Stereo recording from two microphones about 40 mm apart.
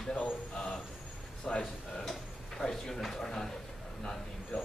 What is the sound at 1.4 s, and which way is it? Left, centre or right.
Speech, centre.